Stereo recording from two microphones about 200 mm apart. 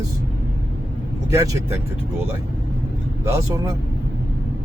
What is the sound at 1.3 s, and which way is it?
Speech, 15° right (ahead or behind).